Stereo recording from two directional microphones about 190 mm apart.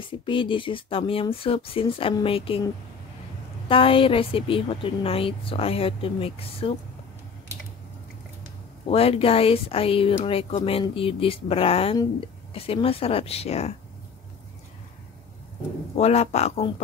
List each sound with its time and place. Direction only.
0.0 s a woman's voice: 25° left (ahead or behind)
8.8 s speech: 30° left (ahead or behind)
16.0 s speech: 35° left (ahead or behind)